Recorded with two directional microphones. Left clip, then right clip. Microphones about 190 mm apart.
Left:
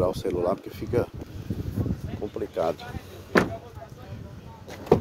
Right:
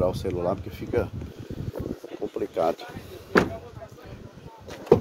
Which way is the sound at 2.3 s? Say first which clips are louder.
Right 2 dB; 15° right (ahead or behind).